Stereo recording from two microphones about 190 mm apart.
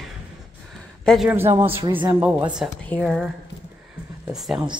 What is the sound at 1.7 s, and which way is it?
Speech, 25° right (ahead or behind).